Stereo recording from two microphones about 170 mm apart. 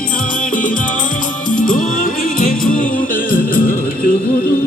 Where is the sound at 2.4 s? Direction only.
50° left (ahead or behind).